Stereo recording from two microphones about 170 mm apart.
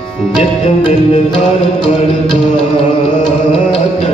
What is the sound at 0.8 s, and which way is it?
Music, 30° left (ahead or behind).